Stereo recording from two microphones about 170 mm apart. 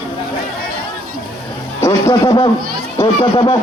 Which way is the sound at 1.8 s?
20° left (ahead or behind).